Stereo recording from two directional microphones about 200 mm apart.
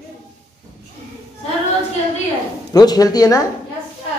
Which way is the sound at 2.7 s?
20° left (ahead or behind).